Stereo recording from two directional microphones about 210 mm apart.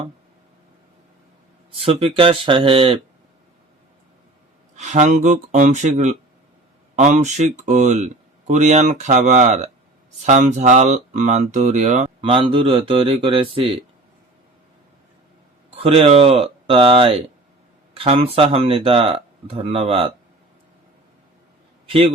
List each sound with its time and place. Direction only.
1.8 s speech: 25° right (ahead or behind)
4.8 s speech: 35° right (ahead or behind)
15.7 s speech: 25° right (ahead or behind)
21.8 s a man's voice: 25° right (ahead or behind)